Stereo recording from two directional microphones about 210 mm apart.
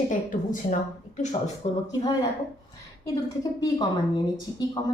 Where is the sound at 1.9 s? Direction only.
20° left (ahead or behind).